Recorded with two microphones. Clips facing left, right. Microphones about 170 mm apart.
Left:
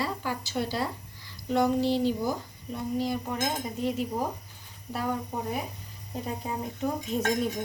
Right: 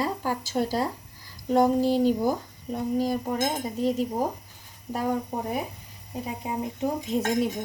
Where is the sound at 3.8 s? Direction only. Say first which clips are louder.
Right 5 dB; 40° right (ahead or behind).